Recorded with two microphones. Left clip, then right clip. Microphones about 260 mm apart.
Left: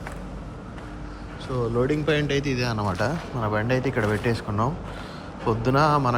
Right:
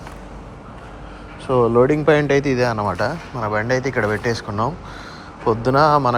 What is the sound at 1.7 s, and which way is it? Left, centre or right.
A man's voice, centre.